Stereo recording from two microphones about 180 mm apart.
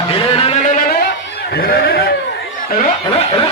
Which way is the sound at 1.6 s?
60° left (ahead or behind).